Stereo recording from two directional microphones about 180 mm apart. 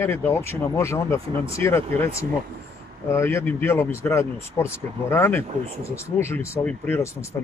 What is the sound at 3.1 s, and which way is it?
Speech, 15° left (ahead or behind).